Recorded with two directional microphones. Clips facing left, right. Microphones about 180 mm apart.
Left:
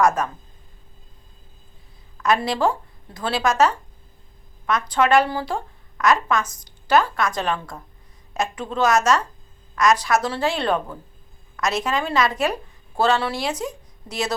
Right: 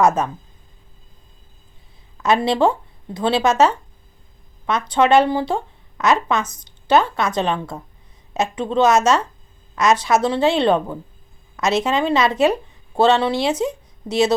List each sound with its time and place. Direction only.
0.0 s a woman's voice: 25° right (ahead or behind)
2.2 s a woman's voice: 25° right (ahead or behind)